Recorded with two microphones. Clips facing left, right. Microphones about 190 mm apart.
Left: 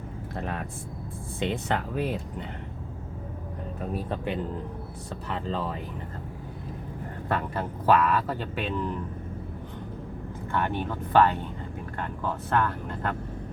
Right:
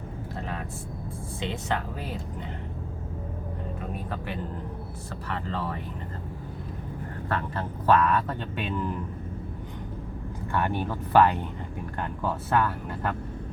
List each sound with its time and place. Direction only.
1.4 s speech: 55° left (ahead or behind)
3.9 s speech: 25° left (ahead or behind)
7.3 s speech: 10° left (ahead or behind)
10.5 s speech: 10° right (ahead or behind)